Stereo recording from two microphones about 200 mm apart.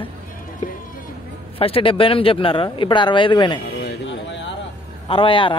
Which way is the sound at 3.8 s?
65° left (ahead or behind).